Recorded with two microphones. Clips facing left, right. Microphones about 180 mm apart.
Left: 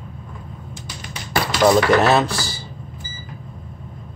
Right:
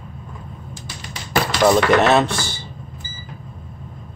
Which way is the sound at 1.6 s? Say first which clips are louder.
Even; centre (ahead or behind).